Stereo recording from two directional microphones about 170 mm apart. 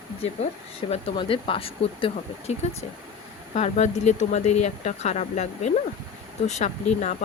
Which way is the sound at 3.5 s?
45° left (ahead or behind).